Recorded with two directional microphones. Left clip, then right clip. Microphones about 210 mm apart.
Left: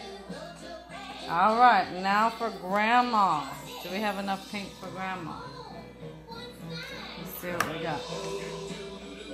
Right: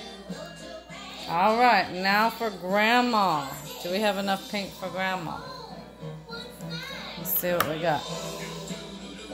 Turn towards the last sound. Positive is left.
turn(degrees=-35)  # may be behind; listen again after turning